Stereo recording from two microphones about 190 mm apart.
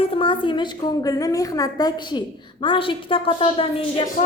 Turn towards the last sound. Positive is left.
turn(degrees=30)  # may be behind; listen again after turning